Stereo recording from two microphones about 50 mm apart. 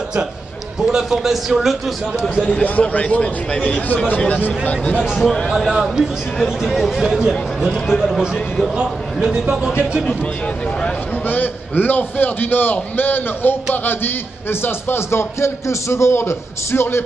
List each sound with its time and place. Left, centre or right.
0.8 s a man's voice: centre
2.2 s a man's voice: left
5.0 s a man's voice: centre
7.9 s speech: centre
9.2 s a man's voice: centre
11.2 s a man's voice: left